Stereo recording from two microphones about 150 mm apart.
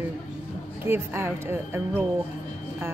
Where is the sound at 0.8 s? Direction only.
15° right (ahead or behind).